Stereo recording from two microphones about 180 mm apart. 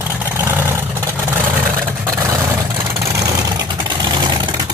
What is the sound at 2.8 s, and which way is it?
Vehicle, 15° right (ahead or behind).